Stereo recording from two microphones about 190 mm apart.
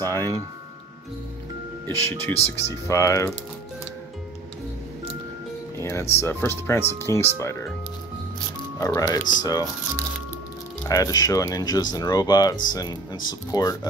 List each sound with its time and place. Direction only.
0.0 s speech: 15° left (ahead or behind)
1.9 s speech: 15° left (ahead or behind)
5.8 s speech: 15° left (ahead or behind)
8.7 s speech: 15° left (ahead or behind)